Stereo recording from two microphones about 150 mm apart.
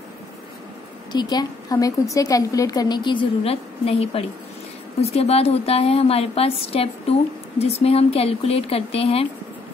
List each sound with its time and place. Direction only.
1.1 s a woman's voice: 25° left (ahead or behind); by 9.3 s 40° left (ahead or behind)